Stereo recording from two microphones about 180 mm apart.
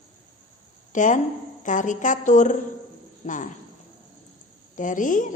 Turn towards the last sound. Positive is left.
turn(degrees=45)  # may be behind; listen again after turning